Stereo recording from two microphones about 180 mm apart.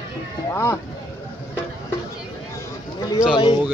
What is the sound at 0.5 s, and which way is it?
Speech, 15° left (ahead or behind).